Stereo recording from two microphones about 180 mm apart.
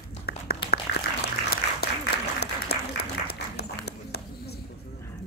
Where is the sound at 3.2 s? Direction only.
60° left (ahead or behind).